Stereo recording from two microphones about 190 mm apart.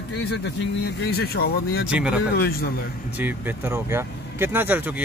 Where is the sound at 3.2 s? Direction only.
15° right (ahead or behind).